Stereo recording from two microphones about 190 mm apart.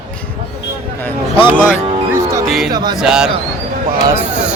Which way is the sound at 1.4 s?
10° right (ahead or behind).